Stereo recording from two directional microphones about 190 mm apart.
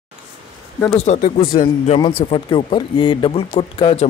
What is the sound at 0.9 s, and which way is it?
Speech, 40° left (ahead or behind).